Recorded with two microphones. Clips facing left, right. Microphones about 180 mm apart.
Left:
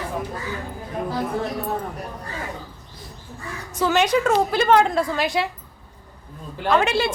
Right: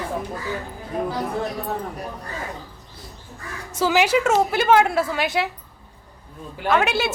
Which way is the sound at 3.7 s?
10° right (ahead or behind).